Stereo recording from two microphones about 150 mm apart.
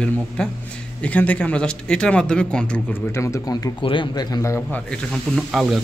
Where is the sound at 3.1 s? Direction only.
20° left (ahead or behind).